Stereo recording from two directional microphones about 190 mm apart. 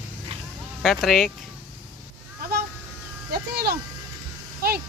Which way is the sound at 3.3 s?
55° right (ahead or behind).